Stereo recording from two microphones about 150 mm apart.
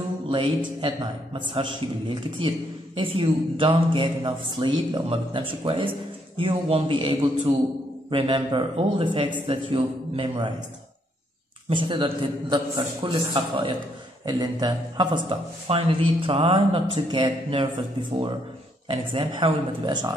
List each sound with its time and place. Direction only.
0.3 s a man's voice: 30° right (ahead or behind)
11.7 s a man's voice: 35° right (ahead or behind)
18.9 s a man's voice: 35° right (ahead or behind)